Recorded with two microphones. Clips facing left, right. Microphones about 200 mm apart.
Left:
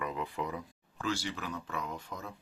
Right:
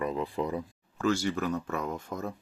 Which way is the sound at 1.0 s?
50° right (ahead or behind).